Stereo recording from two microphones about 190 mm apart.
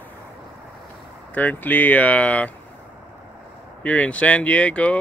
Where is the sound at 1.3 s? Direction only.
10° left (ahead or behind).